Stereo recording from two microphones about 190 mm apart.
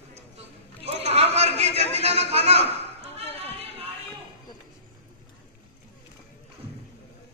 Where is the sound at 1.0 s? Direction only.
35° right (ahead or behind).